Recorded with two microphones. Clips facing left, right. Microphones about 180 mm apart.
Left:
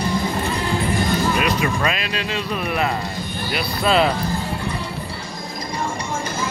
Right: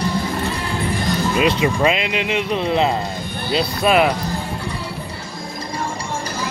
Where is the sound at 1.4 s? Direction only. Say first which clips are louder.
Right 4 dB; 25° right (ahead or behind).